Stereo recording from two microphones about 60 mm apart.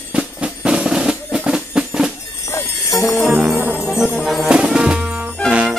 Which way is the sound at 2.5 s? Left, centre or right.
Left.